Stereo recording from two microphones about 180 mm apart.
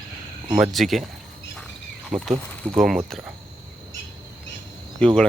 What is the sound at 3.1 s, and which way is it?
Speech, centre (ahead or behind).